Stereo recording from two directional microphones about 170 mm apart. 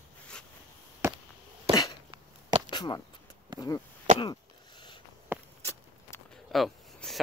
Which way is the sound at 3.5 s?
25° right (ahead or behind).